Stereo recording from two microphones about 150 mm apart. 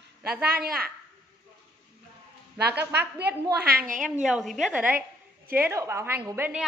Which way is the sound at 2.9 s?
90° right.